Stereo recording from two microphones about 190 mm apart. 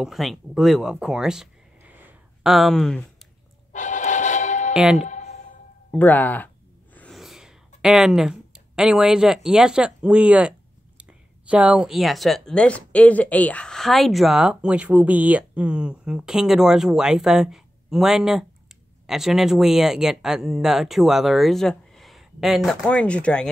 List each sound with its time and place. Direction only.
0.0 s speech: centre (ahead or behind)
3.7 s music: 40° left (ahead or behind)
4.7 s speech: centre (ahead or behind)
5.9 s a sound: 10° left (ahead or behind)
11.0 s speech: 5° right (ahead or behind)